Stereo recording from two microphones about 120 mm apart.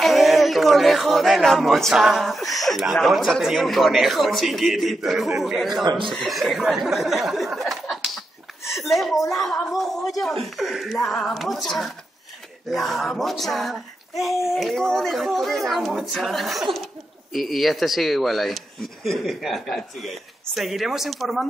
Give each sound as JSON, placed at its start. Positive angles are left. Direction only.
{"t": 0.0, "sound": "speech", "side_deg": 0}
{"t": 5.9, "sound": "speech", "side_deg": -45}
{"t": 6.1, "sound": "speech", "side_deg": 0}
{"t": 7.9, "sound": "a sound", "side_deg": 0}
{"t": 8.8, "sound": "speech", "side_deg": 0}